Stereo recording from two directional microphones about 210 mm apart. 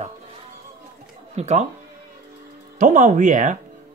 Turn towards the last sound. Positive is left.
turn(degrees=-35)  # may be behind; listen again after turning